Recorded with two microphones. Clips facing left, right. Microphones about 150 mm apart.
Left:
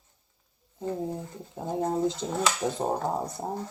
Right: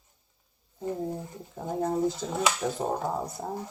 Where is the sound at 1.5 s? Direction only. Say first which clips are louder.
Even; 20° left (ahead or behind).